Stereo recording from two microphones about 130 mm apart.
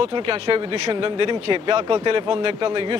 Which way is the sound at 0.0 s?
40° right (ahead or behind).